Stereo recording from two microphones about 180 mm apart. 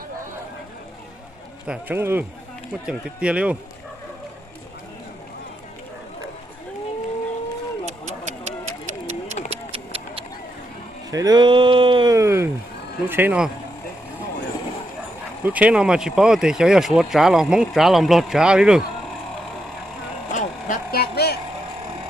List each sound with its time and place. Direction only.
1.6 s speech: 10° right (ahead or behind)
9.0 s a sound: 35° right (ahead or behind)
11.1 s speech: 20° right (ahead or behind)
12.1 s speech: 15° right (ahead or behind)
15.4 s speech: 10° right (ahead or behind)
20.3 s a sound: 50° left (ahead or behind)